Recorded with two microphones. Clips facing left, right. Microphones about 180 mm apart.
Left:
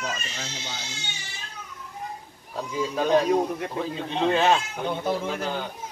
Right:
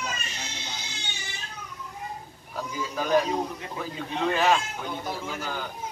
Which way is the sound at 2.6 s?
25° left (ahead or behind).